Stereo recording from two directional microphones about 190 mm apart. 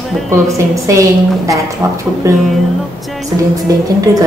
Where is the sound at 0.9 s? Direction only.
15° right (ahead or behind).